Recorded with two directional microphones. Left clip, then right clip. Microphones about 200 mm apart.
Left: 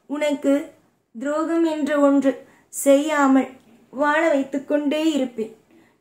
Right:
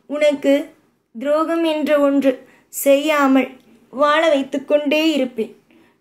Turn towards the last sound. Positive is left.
turn(degrees=-5)  # may be behind; listen again after turning